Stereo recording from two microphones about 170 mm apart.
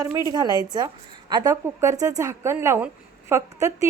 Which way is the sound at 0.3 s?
20° right (ahead or behind).